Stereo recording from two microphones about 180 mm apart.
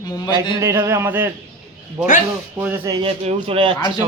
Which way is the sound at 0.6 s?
15° right (ahead or behind).